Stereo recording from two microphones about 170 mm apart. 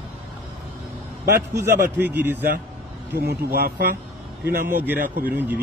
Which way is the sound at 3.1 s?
70° right (ahead or behind).